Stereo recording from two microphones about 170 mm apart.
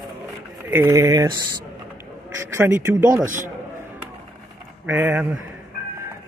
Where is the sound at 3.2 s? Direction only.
50° right (ahead or behind).